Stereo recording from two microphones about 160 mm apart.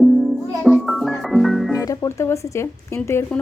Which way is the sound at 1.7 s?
20° left (ahead or behind).